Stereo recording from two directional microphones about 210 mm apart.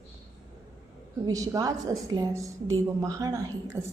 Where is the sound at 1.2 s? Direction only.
15° right (ahead or behind).